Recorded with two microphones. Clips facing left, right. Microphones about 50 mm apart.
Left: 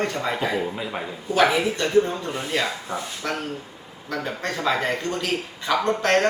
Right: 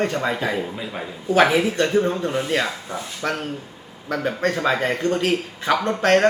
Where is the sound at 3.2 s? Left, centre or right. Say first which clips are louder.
Right 6 dB; right.